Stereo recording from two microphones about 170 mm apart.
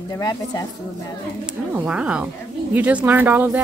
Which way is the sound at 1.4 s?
10° right (ahead or behind).